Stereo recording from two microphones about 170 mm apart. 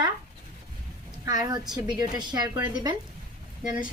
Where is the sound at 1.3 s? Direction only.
25° right (ahead or behind).